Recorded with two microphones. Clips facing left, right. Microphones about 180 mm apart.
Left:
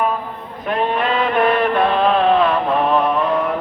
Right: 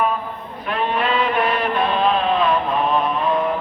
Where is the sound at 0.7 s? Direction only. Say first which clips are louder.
Left 2 dB; 45° left (ahead or behind).